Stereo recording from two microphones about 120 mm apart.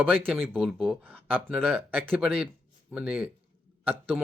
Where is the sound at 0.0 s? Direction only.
15° right (ahead or behind).